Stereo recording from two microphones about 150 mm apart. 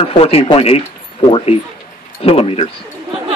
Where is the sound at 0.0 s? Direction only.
40° left (ahead or behind).